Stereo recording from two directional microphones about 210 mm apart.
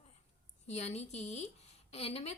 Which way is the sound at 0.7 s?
30° left (ahead or behind).